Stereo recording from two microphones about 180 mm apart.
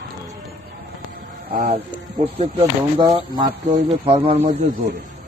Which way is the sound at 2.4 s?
35° right (ahead or behind).